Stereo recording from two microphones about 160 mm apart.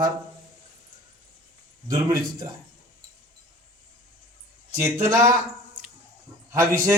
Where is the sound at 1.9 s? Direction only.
25° right (ahead or behind).